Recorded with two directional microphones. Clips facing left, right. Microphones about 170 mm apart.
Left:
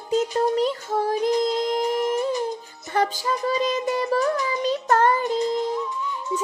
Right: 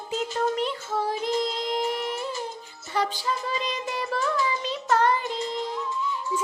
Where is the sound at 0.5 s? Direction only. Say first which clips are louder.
Left 5 dB; 40° left (ahead or behind).